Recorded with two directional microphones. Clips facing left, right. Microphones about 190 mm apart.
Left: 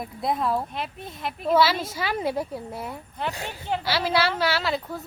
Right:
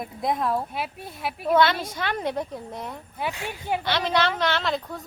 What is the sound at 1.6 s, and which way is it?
A woman's voice, 5° left (ahead or behind).